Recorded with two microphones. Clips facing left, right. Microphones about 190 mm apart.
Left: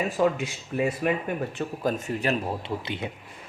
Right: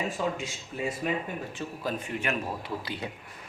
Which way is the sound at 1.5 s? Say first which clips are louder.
Left 5 dB; 45° left (ahead or behind).